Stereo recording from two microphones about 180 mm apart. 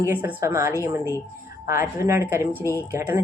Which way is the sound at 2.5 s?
15° left (ahead or behind).